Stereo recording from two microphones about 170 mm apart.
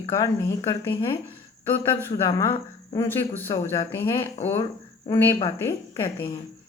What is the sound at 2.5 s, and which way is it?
Speech, 30° left (ahead or behind).